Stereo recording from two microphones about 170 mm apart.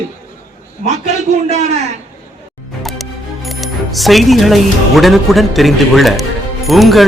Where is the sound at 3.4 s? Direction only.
Centre (ahead or behind).